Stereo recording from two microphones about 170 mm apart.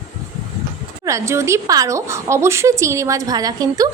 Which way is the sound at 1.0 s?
15° right (ahead or behind).